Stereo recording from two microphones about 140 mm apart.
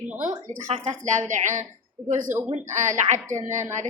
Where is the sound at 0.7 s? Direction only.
45° right (ahead or behind).